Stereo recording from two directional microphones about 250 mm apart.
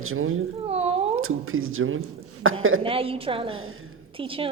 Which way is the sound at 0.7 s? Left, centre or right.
Right.